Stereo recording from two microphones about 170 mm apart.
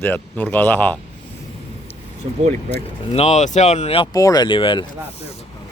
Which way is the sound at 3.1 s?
40° left (ahead or behind).